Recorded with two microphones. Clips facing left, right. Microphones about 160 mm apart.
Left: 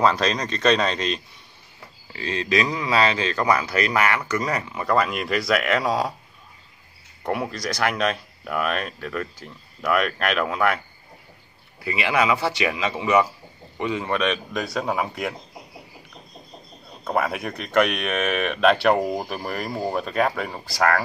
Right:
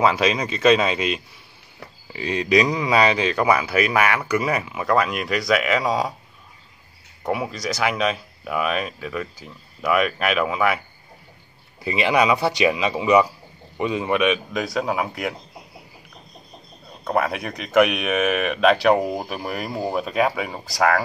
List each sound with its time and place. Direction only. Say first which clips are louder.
0.0 s speech: right 1 dB; 5° right (ahead or behind)
7.2 s speech: right 1 dB; centre (ahead or behind)
11.8 s speech: right 3 dB; 20° right (ahead or behind); by 15.3 s centre (ahead or behind)
17.0 s speech: right 2 dB; centre (ahead or behind)